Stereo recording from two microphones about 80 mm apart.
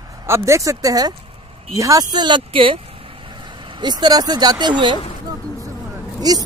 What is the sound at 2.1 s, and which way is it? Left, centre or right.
Speech, right.